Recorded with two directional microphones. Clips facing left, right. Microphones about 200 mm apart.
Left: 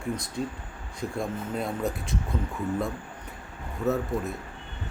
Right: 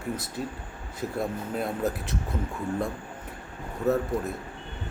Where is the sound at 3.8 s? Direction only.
Centre (ahead or behind).